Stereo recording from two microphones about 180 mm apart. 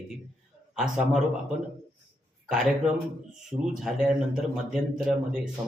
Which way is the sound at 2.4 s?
5° right (ahead or behind).